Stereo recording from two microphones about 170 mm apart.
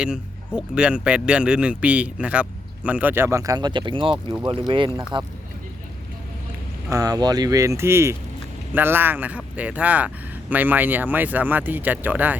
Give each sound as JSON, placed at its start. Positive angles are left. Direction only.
{"t": 0.0, "sound": "speech", "side_deg": -5}
{"t": 6.9, "sound": "speech", "side_deg": -20}